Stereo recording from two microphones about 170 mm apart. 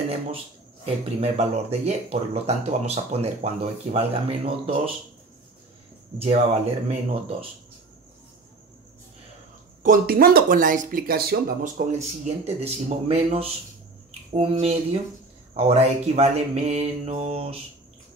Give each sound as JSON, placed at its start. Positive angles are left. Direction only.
{"t": 0.8, "sound": "speech", "side_deg": -35}
{"t": 6.2, "sound": "speech", "side_deg": -40}
{"t": 9.8, "sound": "speech", "side_deg": -60}
{"t": 12.4, "sound": "speech", "side_deg": -40}